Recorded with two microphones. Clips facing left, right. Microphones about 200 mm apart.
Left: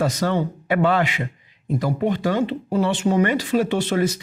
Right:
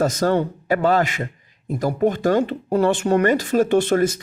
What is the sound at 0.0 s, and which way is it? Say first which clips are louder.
A man's voice: right 3 dB; 45° right (ahead or behind).